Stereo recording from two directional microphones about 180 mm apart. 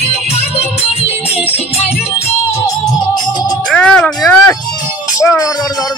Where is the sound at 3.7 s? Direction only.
5° left (ahead or behind).